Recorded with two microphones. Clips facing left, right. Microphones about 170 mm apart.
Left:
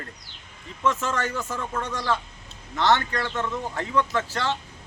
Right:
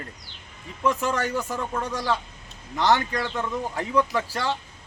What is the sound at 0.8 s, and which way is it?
Speech, 15° right (ahead or behind).